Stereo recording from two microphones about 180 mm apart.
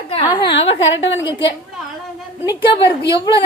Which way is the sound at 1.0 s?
90° left.